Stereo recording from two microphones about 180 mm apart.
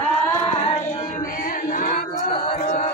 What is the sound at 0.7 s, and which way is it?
Music, 35° left (ahead or behind).